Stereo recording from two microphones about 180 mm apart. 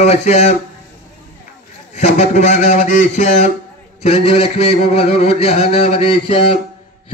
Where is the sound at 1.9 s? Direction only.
40° left (ahead or behind).